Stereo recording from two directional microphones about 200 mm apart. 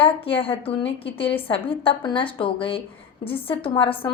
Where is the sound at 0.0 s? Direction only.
25° left (ahead or behind).